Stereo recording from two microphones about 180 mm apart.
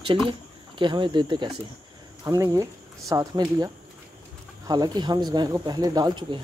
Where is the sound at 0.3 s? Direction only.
25° right (ahead or behind).